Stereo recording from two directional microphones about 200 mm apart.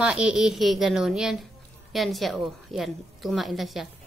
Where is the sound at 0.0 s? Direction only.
5° right (ahead or behind).